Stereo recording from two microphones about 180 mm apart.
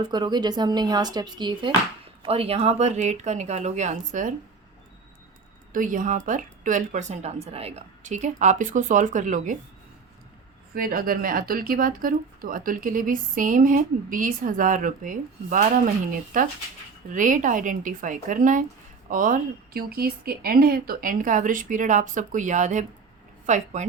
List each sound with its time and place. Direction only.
0.0 s speech: 25° right (ahead or behind); by 4.4 s 45° right (ahead or behind)
5.7 s speech: 45° right (ahead or behind)
10.8 s speech: 55° right (ahead or behind)